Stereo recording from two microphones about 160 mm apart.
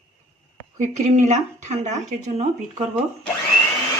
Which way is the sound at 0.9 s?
45° right (ahead or behind).